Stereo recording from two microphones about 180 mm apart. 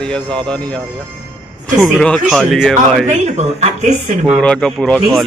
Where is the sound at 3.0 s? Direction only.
40° right (ahead or behind).